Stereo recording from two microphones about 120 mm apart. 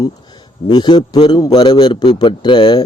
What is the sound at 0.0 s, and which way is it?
A man's voice, 35° left (ahead or behind).